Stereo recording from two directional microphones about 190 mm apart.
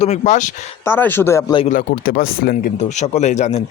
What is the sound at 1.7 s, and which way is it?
Speech, 50° left (ahead or behind).